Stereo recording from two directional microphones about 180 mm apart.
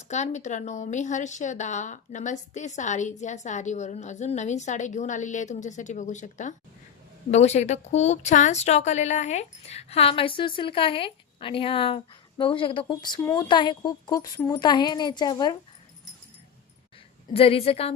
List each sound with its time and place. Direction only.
0.1 s a woman's voice: 40° left (ahead or behind); by 15.5 s 25° left (ahead or behind)
17.3 s a woman's voice: 35° left (ahead or behind)